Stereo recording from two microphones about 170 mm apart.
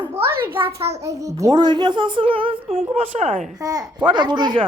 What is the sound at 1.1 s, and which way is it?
Speech, 20° right (ahead or behind).